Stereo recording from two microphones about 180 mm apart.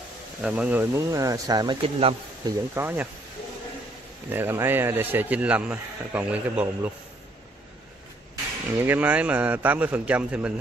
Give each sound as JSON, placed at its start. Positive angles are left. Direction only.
{"t": 0.4, "sound": "speech", "side_deg": -5}
{"t": 2.7, "sound": "speech", "side_deg": -10}
{"t": 4.3, "sound": "speech", "side_deg": -10}
{"t": 8.7, "sound": "speech", "side_deg": -10}